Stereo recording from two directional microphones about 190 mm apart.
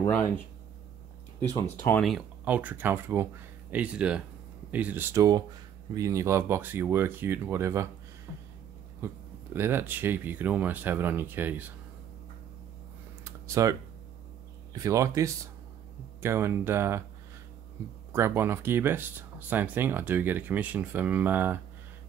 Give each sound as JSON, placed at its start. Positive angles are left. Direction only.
{"t": 1.5, "sound": "speech", "side_deg": 10}
{"t": 2.0, "sound": "speech", "side_deg": -5}
{"t": 9.0, "sound": "speech", "side_deg": -10}
{"t": 13.2, "sound": "computer keyboard", "side_deg": -15}
{"t": 14.7, "sound": "speech", "side_deg": -15}
{"t": 18.1, "sound": "speech", "side_deg": -10}